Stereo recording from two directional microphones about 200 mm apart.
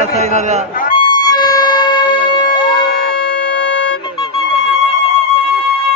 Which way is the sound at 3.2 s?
50° left (ahead or behind).